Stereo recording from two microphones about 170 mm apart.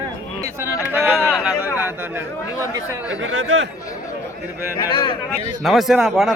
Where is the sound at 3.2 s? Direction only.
90° right.